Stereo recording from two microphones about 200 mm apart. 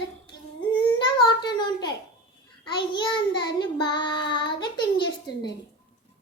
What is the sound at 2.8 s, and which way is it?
Child singing, 25° left (ahead or behind).